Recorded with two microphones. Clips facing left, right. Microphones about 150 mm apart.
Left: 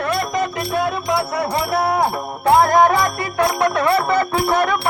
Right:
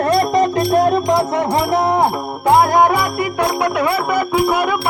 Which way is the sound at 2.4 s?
15° right (ahead or behind).